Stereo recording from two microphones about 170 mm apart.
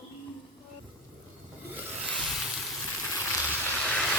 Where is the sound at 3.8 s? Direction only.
5° left (ahead or behind).